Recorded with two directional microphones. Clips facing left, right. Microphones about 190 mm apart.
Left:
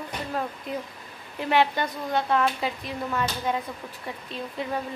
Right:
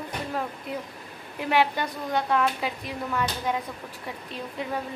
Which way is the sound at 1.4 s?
10° right (ahead or behind).